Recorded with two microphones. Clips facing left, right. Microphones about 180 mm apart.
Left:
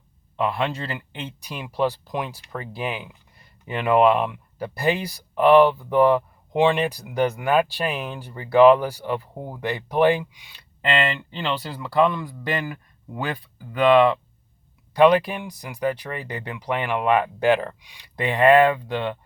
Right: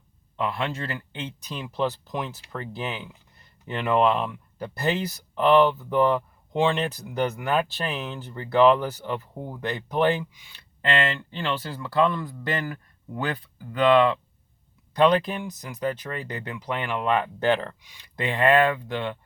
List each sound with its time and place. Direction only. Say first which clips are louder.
0.4 s speech: left 3 dB; 15° left (ahead or behind)